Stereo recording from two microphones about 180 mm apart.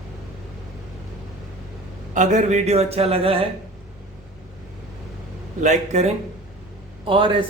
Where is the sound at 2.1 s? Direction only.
40° right (ahead or behind).